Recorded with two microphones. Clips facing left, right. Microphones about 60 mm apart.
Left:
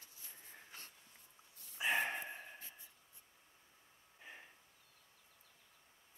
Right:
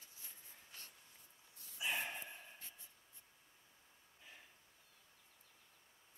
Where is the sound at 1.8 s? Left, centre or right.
Left.